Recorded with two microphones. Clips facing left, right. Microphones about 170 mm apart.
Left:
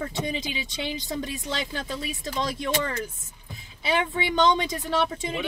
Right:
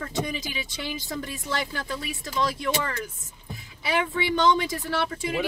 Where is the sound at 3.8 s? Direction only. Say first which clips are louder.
Even; 20° left (ahead or behind).